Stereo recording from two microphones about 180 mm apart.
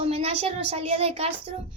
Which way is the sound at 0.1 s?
35° right (ahead or behind).